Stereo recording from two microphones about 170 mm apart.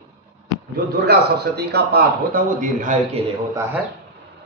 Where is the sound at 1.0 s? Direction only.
70° right (ahead or behind); by 3.3 s 45° right (ahead or behind).